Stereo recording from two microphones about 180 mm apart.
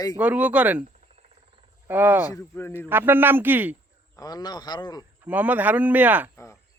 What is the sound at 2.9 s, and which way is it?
Speech, 10° right (ahead or behind).